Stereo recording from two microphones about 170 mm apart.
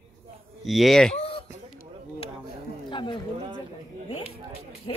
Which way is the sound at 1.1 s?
35° left (ahead or behind).